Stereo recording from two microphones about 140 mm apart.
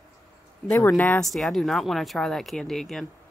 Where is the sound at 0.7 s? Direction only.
15° left (ahead or behind).